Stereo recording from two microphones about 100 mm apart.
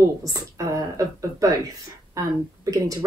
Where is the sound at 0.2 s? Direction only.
35° right (ahead or behind).